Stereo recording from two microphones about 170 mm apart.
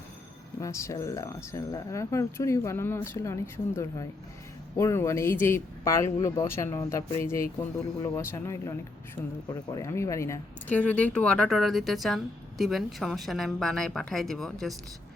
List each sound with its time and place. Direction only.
0.6 s a woman's voice: 15° left (ahead or behind); by 14.7 s centre (ahead or behind)